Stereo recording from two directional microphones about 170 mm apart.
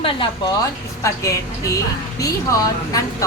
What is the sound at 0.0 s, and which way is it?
Speech, 30° left (ahead or behind).